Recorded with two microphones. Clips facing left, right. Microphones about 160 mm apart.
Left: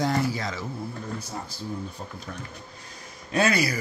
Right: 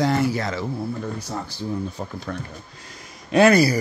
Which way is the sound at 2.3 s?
90° right.